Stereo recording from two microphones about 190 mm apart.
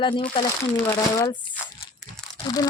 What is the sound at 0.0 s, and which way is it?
Speech, 30° left (ahead or behind).